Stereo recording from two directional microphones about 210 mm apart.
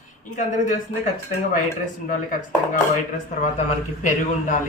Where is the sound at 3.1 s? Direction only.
35° left (ahead or behind).